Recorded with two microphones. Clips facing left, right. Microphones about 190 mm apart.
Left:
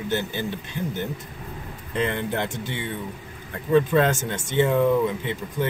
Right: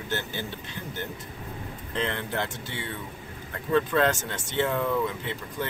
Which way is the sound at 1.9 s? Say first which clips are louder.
Left 4 dB; 15° left (ahead or behind).